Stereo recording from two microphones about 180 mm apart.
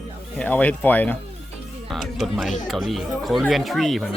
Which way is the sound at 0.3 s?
10° left (ahead or behind).